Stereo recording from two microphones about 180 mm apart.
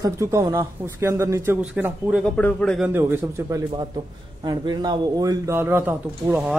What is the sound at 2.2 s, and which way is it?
Speech, 5° left (ahead or behind).